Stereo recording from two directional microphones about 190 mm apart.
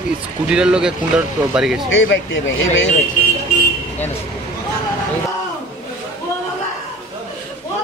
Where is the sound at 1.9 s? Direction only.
80° left.